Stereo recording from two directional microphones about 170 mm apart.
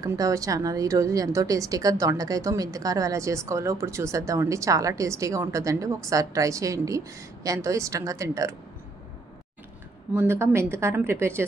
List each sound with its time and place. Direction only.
0.0 s a woman's voice: 20° right (ahead or behind)
10.1 s a woman's voice: 15° right (ahead or behind)